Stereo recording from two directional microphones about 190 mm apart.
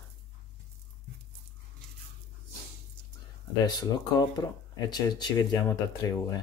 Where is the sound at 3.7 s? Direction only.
20° left (ahead or behind).